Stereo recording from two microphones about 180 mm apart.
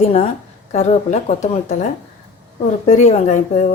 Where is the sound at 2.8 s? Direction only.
40° left (ahead or behind).